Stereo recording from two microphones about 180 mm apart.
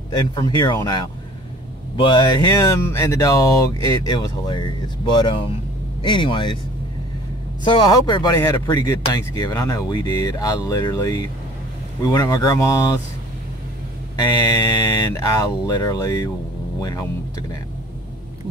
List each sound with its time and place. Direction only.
0.4 s speech: 20° left (ahead or behind)
7.6 s speech: 25° left (ahead or behind)
14.1 s speech: 20° left (ahead or behind)